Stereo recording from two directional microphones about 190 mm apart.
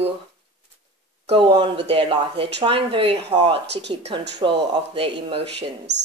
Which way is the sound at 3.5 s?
65° right (ahead or behind).